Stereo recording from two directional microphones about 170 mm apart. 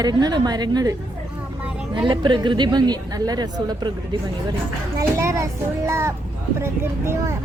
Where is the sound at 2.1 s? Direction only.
25° right (ahead or behind).